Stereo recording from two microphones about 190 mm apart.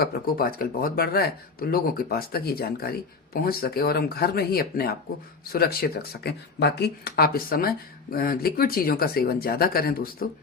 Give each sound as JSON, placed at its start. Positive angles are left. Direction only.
{"t": 0.0, "sound": "speech", "side_deg": 50}